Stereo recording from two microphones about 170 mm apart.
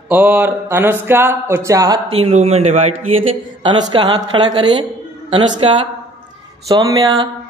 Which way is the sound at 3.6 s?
25° right (ahead or behind).